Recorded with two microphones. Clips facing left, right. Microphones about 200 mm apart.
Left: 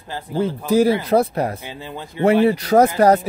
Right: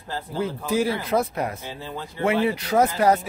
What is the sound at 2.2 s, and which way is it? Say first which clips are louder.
Speech: left 7 dB; 40° left (ahead or behind).